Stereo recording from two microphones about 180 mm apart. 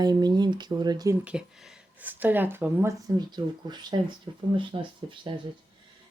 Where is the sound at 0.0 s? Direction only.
25° right (ahead or behind).